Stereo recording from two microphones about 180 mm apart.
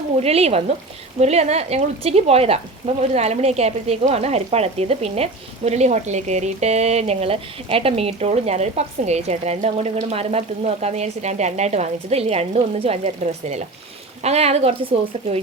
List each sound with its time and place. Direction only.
0.2 s a woman's voice: 35° right (ahead or behind)